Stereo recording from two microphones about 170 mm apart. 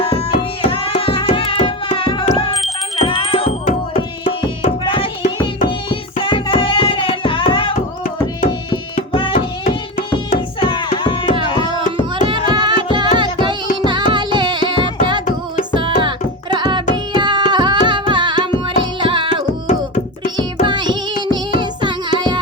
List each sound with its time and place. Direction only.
0.0 s music: 35° left (ahead or behind)
3.7 s music: 50° left (ahead or behind)
4.3 s music: 30° left (ahead or behind)
8.7 s music: 30° left (ahead or behind)
10.6 s music: 30° left (ahead or behind)
12.2 s music: 25° right (ahead or behind)
20.7 s child singing: 25° right (ahead or behind)
21.3 s music: 25° right (ahead or behind)